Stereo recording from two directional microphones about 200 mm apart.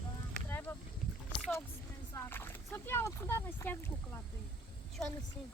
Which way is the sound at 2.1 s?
10° left (ahead or behind).